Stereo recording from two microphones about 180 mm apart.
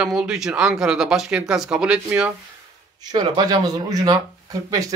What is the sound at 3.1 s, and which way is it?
Speech, 25° right (ahead or behind).